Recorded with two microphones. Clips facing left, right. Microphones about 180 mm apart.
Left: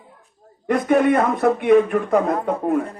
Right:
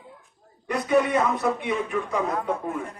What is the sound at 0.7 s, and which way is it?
A man's voice, 55° left (ahead or behind).